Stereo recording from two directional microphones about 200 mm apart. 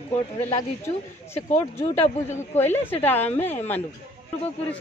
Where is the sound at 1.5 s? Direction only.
35° left (ahead or behind).